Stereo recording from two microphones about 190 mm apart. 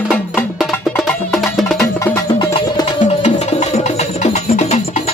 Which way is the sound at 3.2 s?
35° left (ahead or behind).